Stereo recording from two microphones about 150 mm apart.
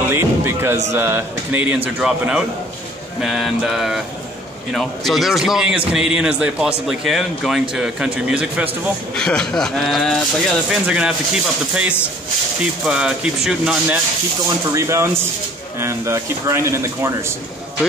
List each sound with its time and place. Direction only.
0.1 s music: 15° right (ahead or behind)
0.9 s a man's voice: 15° right (ahead or behind)
9.1 s speech: 5° left (ahead or behind)
14.7 s speech: 20° right (ahead or behind)